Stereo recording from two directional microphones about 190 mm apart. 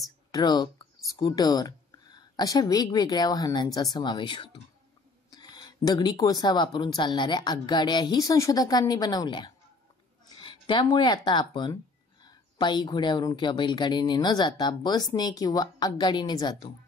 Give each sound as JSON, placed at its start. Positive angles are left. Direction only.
{"t": 0.3, "sound": "speech", "side_deg": 20}